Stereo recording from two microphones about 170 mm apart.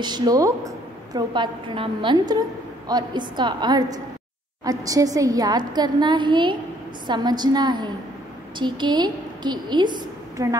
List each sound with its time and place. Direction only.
0.0 s a woman's voice: 25° right (ahead or behind)